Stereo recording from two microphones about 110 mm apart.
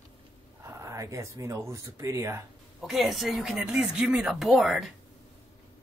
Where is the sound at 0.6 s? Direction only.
30° right (ahead or behind).